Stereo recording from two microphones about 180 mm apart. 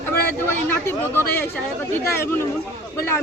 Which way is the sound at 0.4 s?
15° left (ahead or behind).